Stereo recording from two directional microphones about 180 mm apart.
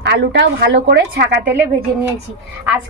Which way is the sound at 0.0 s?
70° right (ahead or behind).